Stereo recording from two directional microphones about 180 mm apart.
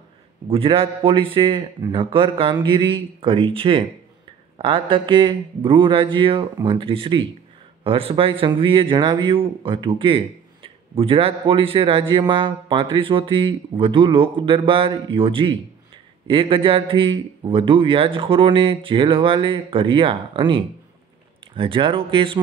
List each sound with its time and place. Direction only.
0.5 s speech: 30° right (ahead or behind)